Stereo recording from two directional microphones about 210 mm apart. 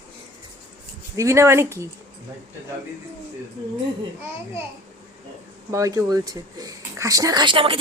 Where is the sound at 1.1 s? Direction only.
15° right (ahead or behind).